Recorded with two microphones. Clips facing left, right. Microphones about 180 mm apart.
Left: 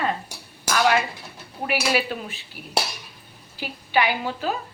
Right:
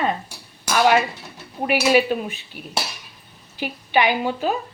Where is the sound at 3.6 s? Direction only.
20° right (ahead or behind).